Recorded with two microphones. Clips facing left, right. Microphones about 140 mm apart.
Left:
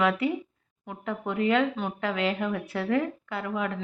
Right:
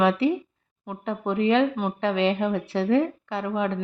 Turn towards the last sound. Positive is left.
turn(degrees=-25)  # may be behind; listen again after turning